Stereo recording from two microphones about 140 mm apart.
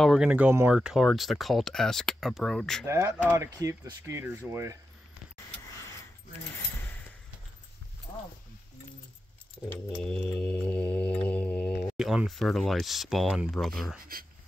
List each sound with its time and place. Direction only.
0.0 s speech: 5° right (ahead or behind)
2.9 s speech: 20° right (ahead or behind)
10.4 s mantra: 10° left (ahead or behind)
12.0 s speech: 5° right (ahead or behind)
13.9 s speech: 90° right